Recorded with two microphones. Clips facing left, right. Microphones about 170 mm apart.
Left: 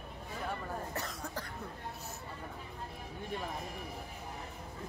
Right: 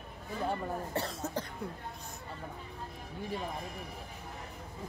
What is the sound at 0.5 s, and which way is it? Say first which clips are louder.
Speech: right 4 dB; 30° right (ahead or behind).